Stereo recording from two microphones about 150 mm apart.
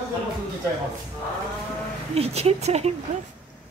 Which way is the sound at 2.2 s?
45° right (ahead or behind).